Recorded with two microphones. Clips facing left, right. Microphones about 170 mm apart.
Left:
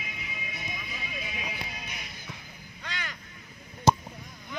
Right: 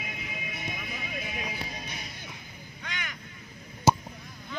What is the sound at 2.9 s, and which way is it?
Vehicle, 35° left (ahead or behind).